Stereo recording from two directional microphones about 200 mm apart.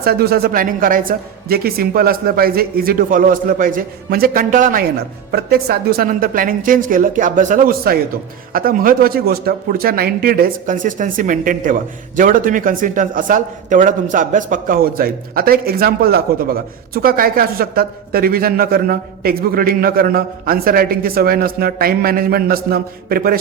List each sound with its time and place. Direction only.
0.0 s a man's voice: 50° right (ahead or behind)